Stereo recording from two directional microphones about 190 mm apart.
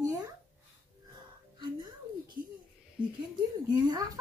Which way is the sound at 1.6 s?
25° right (ahead or behind).